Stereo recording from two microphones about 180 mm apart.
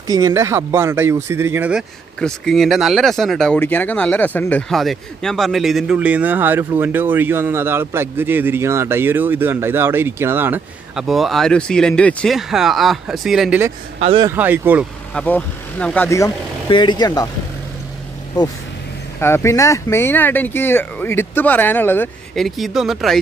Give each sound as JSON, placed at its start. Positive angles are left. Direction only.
{"t": 0.0, "sound": "speech", "side_deg": -20}
{"t": 2.1, "sound": "speech", "side_deg": 5}
{"t": 13.9, "sound": "speech", "side_deg": -35}
{"t": 14.2, "sound": "speech", "side_deg": -10}
{"t": 15.1, "sound": "speech", "side_deg": 10}
{"t": 19.1, "sound": "speech", "side_deg": 15}